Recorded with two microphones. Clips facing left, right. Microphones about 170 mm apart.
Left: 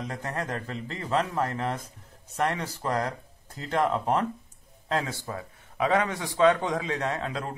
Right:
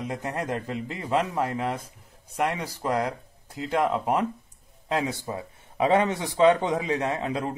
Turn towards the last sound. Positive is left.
turn(degrees=-15)  # may be behind; listen again after turning